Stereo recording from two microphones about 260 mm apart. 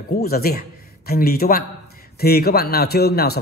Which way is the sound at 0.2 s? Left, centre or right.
Left.